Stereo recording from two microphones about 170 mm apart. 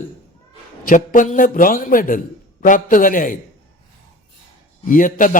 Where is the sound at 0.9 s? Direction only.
50° left (ahead or behind).